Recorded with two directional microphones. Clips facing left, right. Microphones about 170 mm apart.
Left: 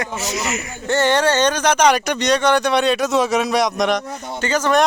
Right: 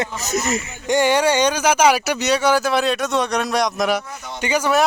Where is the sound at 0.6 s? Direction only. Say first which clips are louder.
Left 2 dB; 15° right (ahead or behind).